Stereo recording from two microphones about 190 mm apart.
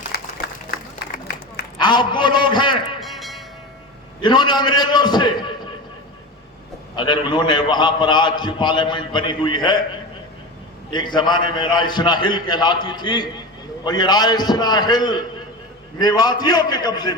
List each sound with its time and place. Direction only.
0.1 s a sound: 55° left (ahead or behind)
1.8 s a man's voice: 25° left (ahead or behind)
3.0 s music: centre (ahead or behind)
4.2 s a man's voice: 25° left (ahead or behind)
6.9 s a man's voice: 25° left (ahead or behind)
10.9 s a man's voice: 25° left (ahead or behind)